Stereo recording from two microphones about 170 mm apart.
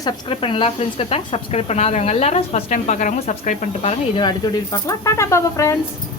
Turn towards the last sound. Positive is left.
turn(degrees=15)  # may be behind; listen again after turning